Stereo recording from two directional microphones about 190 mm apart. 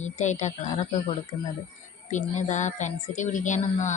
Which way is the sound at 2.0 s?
40° left (ahead or behind).